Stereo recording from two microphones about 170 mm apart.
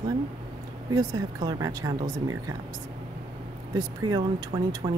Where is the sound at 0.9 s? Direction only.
25° right (ahead or behind).